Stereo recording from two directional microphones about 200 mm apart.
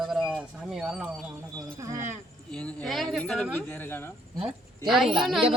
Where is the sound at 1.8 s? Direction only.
15° right (ahead or behind).